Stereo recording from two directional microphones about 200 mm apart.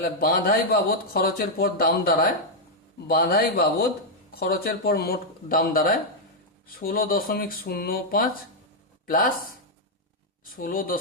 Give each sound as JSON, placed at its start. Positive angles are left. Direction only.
{"t": 0.0, "sound": "speech", "side_deg": 45}
{"t": 10.4, "sound": "speech", "side_deg": 45}